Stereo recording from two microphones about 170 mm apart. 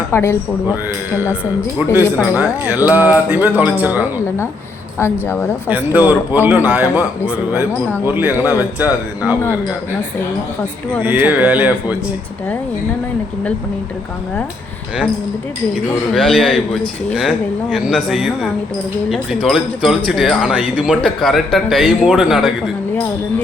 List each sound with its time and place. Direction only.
0.1 s speech: 15° left (ahead or behind)
1.8 s a man's voice: 10° right (ahead or behind)
5.6 s a man's voice: 10° right (ahead or behind)
11.0 s a man's voice: 10° right (ahead or behind)
15.7 s speech: centre (ahead or behind)